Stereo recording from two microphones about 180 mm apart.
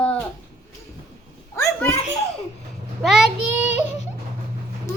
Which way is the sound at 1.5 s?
15° left (ahead or behind).